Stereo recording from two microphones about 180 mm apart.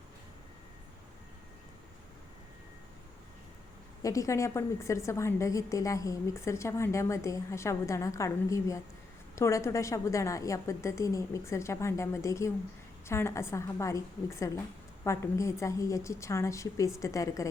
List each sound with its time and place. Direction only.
4.0 s a woman's voice: 20° left (ahead or behind)